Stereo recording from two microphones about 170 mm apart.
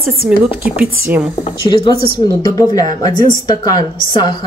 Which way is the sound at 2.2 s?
30° left (ahead or behind).